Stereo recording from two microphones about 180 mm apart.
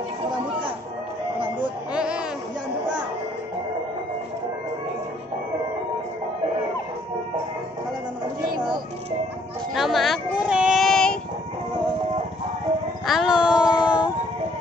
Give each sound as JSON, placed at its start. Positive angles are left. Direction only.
{"t": 2.0, "sound": "a sound", "side_deg": -5}
{"t": 8.5, "sound": "music", "side_deg": -25}
{"t": 9.8, "sound": "child singing", "side_deg": 0}
{"t": 13.0, "sound": "music", "side_deg": 0}